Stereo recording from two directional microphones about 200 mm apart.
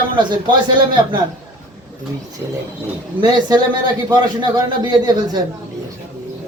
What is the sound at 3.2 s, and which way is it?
A man's voice, 20° right (ahead or behind).